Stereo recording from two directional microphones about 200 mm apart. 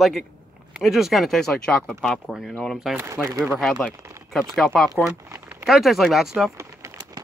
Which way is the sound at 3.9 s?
15° right (ahead or behind).